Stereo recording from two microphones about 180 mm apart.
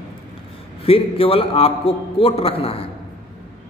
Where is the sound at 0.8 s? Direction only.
30° left (ahead or behind).